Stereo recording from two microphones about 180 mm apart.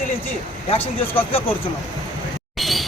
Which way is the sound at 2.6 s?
Centre (ahead or behind).